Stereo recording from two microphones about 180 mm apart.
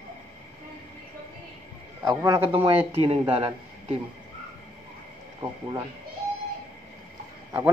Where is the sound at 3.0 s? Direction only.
30° right (ahead or behind).